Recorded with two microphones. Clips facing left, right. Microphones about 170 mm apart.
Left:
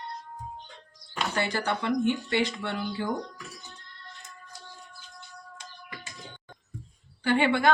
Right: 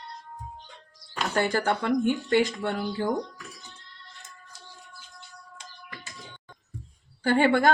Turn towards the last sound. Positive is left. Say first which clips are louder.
# right 3 dB
turn(degrees=-45)  # may be behind; listen again after turning